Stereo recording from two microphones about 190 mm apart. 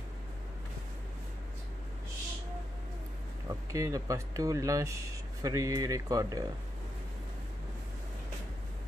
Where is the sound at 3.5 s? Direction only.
15° right (ahead or behind).